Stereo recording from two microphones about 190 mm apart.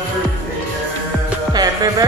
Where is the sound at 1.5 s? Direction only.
20° right (ahead or behind).